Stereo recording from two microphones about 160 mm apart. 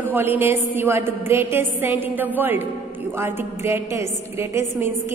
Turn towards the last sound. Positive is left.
turn(degrees=-15)  # may be behind; listen again after turning